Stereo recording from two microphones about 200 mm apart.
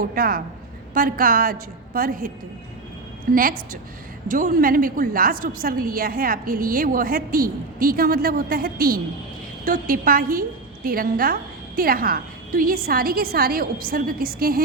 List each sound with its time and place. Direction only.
0.0 s a woman's voice: 45° right (ahead or behind)
3.3 s a woman's voice: 45° right (ahead or behind)